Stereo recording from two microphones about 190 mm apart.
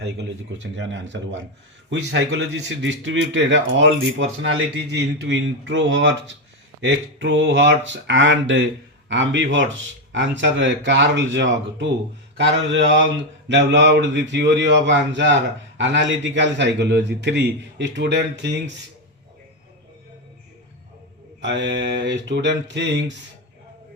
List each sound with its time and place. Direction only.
0.0 s a man's voice: 70° right (ahead or behind)
21.4 s a man's voice: 70° right (ahead or behind)